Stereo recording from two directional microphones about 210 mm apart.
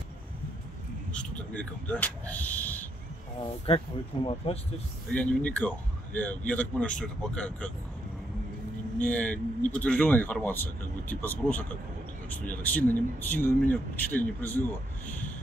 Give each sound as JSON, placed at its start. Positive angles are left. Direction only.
{"t": 1.1, "sound": "a sound", "side_deg": 5}
{"t": 3.6, "sound": "speech", "side_deg": 25}
{"t": 5.1, "sound": "speech", "side_deg": 5}
{"t": 9.0, "sound": "speech", "side_deg": 5}